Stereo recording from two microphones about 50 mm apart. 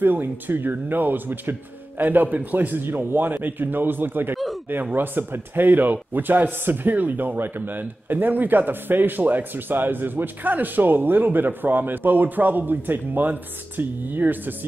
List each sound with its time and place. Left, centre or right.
0.0 s a man's voice: right